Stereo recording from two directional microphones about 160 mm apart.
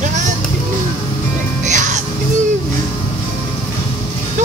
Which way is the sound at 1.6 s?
50° right (ahead or behind).